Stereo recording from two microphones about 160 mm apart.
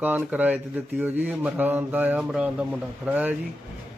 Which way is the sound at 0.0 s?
10° right (ahead or behind).